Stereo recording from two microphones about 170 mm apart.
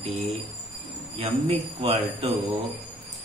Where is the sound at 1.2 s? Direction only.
35° right (ahead or behind).